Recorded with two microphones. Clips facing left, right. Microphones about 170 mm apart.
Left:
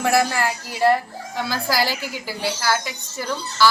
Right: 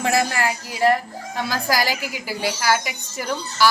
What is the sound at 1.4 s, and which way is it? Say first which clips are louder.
A woman's voice: even; 15° right (ahead or behind).